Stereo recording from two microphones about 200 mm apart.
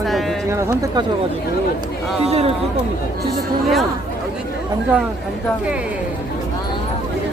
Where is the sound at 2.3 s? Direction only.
30° right (ahead or behind).